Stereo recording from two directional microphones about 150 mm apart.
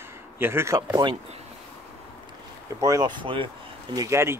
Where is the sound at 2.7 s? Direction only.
25° right (ahead or behind).